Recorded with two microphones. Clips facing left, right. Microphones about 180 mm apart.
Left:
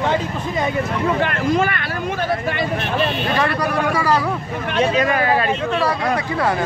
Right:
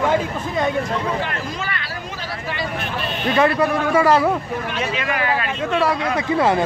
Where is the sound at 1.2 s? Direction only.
55° left (ahead or behind).